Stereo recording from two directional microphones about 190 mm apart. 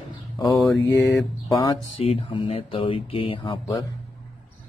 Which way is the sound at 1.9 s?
30° left (ahead or behind).